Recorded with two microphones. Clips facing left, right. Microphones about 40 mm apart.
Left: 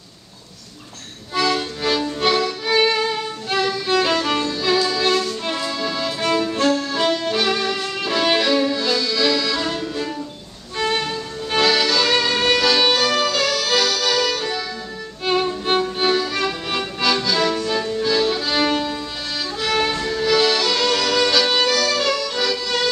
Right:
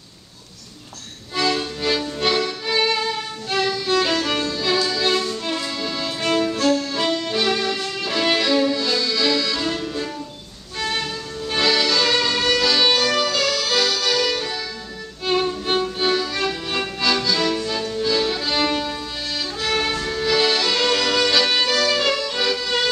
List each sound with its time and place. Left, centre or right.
1.3 s music: centre
2.7 s violin: centre
4.4 s music: centre
5.4 s music: centre
6.5 s music: left
6.8 s violin: centre
10.8 s violin: centre
15.2 s music: centre
19.6 s violin: centre
20.2 s music: centre